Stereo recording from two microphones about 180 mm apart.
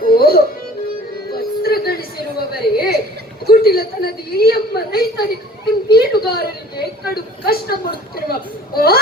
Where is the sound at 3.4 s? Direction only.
60° left (ahead or behind).